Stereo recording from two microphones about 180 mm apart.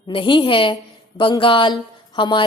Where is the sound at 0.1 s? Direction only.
30° left (ahead or behind).